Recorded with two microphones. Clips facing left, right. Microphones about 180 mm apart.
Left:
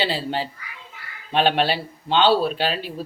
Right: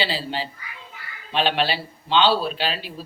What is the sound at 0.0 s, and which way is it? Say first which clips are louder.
Speech: left 2 dB; 50° left (ahead or behind).